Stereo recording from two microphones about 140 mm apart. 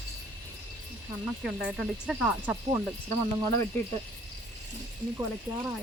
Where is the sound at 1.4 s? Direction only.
Centre (ahead or behind).